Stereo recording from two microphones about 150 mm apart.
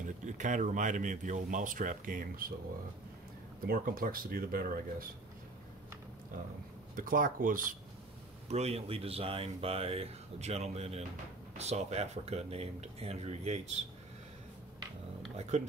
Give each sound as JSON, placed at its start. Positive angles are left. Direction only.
{"t": 0.0, "sound": "speech", "side_deg": -55}
{"t": 3.6, "sound": "speech", "side_deg": -75}
{"t": 7.0, "sound": "speech", "side_deg": -65}
{"t": 8.5, "sound": "speech", "side_deg": -45}